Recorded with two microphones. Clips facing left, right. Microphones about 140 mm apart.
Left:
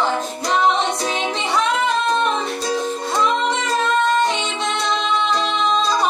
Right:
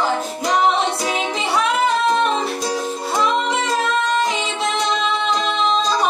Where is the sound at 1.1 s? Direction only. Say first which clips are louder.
Even; 35° right (ahead or behind).